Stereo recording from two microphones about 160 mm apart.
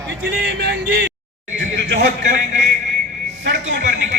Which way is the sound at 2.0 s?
50° right (ahead or behind).